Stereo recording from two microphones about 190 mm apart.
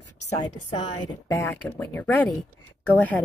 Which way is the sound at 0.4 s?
20° left (ahead or behind).